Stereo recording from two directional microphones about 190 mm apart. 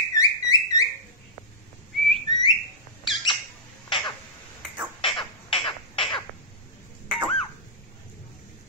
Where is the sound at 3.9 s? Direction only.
25° left (ahead or behind).